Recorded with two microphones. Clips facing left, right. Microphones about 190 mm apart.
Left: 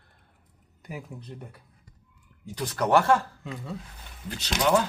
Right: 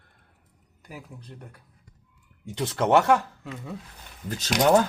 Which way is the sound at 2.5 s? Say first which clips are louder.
Right 2 dB; 25° right (ahead or behind).